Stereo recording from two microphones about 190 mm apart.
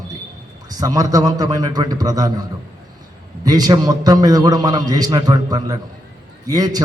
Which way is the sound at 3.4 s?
20° right (ahead or behind).